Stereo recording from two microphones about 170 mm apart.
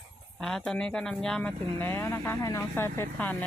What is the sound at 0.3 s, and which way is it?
Speech, 5° left (ahead or behind).